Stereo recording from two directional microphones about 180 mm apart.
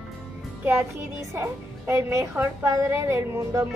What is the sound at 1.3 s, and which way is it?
A woman's voice, 15° right (ahead or behind).